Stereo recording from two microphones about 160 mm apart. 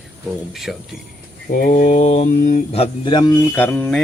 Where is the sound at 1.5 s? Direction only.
55° left (ahead or behind).